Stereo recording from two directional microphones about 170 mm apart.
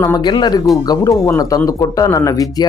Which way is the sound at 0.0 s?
20° left (ahead or behind).